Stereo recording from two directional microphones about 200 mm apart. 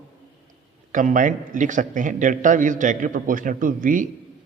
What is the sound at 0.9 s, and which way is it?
A man's voice, 40° right (ahead or behind).